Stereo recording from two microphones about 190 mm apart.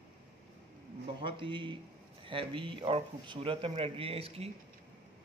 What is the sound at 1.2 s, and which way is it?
A man's voice, 25° right (ahead or behind).